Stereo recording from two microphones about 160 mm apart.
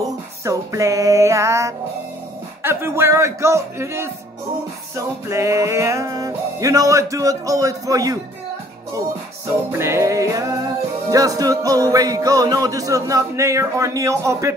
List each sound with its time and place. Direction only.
0.0 s music: 20° right (ahead or behind)
2.6 s a man's voice: 15° right (ahead or behind)
4.9 s music: 20° right (ahead or behind)
9.7 s music: 15° right (ahead or behind)